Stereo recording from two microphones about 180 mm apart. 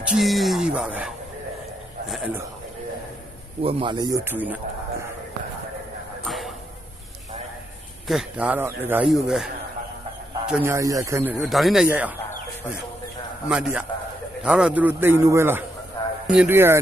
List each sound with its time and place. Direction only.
0.0 s speech: centre (ahead or behind)
3.6 s speech: 30° right (ahead or behind); by 5.0 s 10° right (ahead or behind)
6.2 s a sound: centre (ahead or behind)
8.0 s speech: 5° right (ahead or behind)
10.5 s speech: 15° right (ahead or behind)
13.5 s speech: 5° right (ahead or behind)